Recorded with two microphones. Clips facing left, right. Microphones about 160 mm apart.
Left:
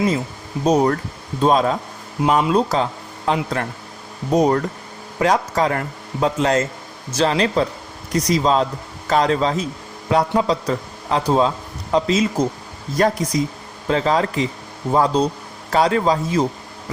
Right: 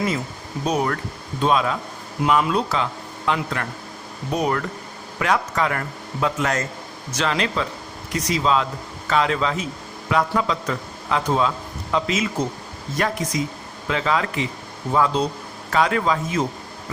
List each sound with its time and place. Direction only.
0.6 s a man's voice: 40° left (ahead or behind)